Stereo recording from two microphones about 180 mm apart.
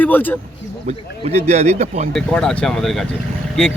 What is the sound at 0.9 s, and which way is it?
Speech, 35° right (ahead or behind).